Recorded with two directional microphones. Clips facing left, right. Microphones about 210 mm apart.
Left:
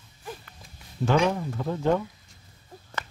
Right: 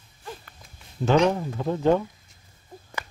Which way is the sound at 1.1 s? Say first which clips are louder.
Right 3 dB; 20° right (ahead or behind).